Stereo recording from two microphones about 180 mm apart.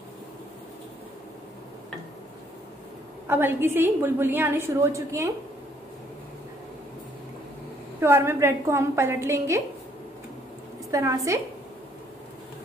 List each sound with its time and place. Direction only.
3.3 s a woman's voice: 10° right (ahead or behind)
8.0 s a woman's voice: 15° right (ahead or behind)
10.9 s a woman's voice: 15° right (ahead or behind)